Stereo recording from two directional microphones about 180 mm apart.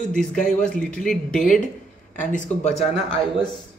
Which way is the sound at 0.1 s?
5° left (ahead or behind).